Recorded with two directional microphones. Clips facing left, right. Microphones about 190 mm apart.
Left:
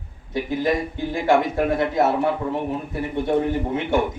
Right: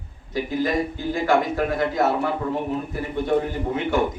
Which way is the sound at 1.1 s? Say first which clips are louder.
Left 2 dB; 25° left (ahead or behind).